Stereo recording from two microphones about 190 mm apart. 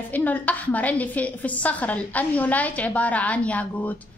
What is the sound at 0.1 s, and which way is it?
A woman's voice, 10° left (ahead or behind).